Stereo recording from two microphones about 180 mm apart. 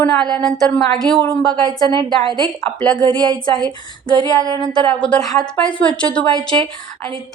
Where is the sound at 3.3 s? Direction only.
20° right (ahead or behind).